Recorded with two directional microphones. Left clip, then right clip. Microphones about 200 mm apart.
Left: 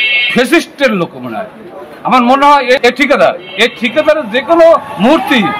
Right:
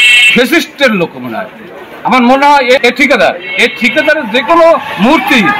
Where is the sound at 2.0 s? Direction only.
20° left (ahead or behind).